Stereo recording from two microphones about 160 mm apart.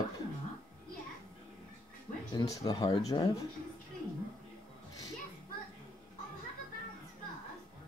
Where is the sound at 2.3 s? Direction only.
25° left (ahead or behind).